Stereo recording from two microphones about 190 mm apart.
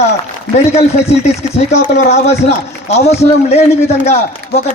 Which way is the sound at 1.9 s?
35° left (ahead or behind).